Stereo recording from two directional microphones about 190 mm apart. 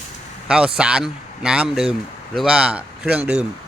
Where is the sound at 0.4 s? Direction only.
5° right (ahead or behind).